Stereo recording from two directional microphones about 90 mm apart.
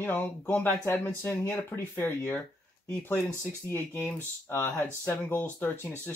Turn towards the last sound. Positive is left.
turn(degrees=25)  # may be behind; listen again after turning